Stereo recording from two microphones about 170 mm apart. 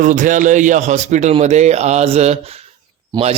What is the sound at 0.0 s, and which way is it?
A man's voice, 50° right (ahead or behind).